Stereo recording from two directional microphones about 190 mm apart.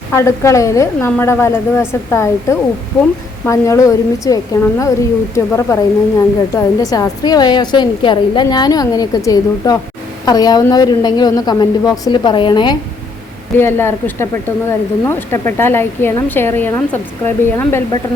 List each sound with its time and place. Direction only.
0.1 s a woman's voice: 15° left (ahead or behind)
13.6 s a woman's voice: 10° left (ahead or behind)